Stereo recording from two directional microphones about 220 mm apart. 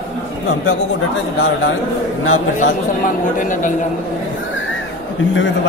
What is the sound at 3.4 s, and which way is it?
Speech, 35° left (ahead or behind).